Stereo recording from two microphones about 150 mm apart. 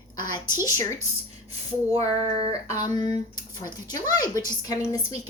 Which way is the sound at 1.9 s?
40° right (ahead or behind).